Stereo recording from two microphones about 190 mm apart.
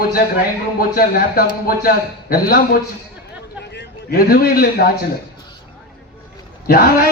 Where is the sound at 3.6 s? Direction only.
65° left (ahead or behind).